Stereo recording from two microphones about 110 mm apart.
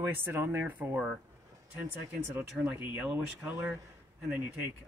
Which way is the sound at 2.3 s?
20° right (ahead or behind).